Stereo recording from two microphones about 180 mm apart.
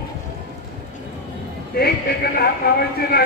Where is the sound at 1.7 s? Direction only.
60° left (ahead or behind).